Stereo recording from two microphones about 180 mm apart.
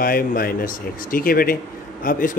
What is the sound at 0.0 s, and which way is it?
Speech, 55° left (ahead or behind).